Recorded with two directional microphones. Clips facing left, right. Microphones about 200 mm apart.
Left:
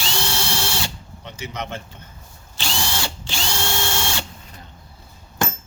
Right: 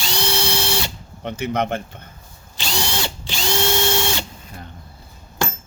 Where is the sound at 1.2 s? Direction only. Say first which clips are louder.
Right 9 dB; 55° right (ahead or behind).